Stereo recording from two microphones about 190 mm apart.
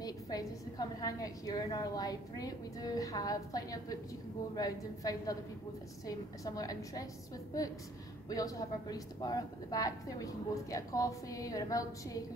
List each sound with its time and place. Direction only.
0.0 s a woman's voice: 20° left (ahead or behind)
8.3 s a woman's voice: 20° left (ahead or behind)